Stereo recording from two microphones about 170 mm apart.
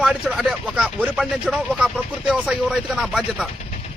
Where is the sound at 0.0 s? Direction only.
5° right (ahead or behind).